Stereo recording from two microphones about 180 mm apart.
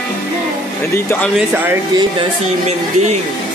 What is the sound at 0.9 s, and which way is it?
Speech, 15° left (ahead or behind).